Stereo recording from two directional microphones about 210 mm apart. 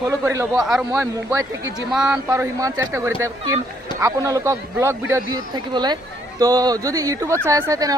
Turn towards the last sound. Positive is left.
turn(degrees=-15)  # may be behind; listen again after turning